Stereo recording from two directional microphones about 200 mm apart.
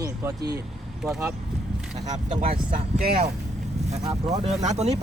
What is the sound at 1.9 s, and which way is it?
Speech, 35° right (ahead or behind).